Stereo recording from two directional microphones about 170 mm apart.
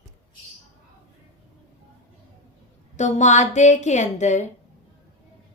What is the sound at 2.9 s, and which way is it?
A woman's voice, 45° left (ahead or behind).